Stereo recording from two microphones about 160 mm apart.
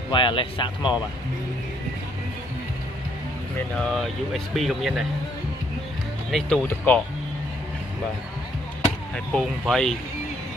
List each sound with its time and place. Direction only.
0.1 s speech: 30° left (ahead or behind)
3.7 s speech: 5° left (ahead or behind)
6.3 s speech: centre (ahead or behind)
9.1 s speech: 5° left (ahead or behind)